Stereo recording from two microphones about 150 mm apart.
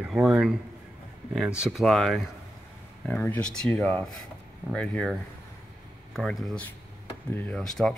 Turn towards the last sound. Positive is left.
turn(degrees=5)  # may be behind; listen again after turning